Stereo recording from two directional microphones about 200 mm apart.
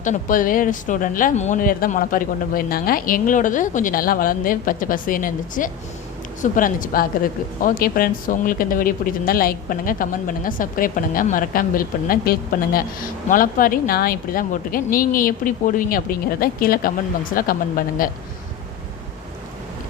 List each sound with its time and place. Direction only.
0.0 s speech: 40° left (ahead or behind)